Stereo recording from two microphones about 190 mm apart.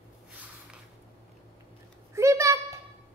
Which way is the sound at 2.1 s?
15° right (ahead or behind).